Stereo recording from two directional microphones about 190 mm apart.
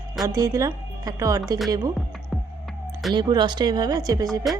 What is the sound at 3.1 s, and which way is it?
Speech, 25° right (ahead or behind).